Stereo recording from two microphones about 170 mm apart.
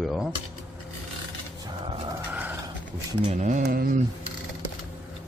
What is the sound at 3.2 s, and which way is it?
Speech, 45° right (ahead or behind).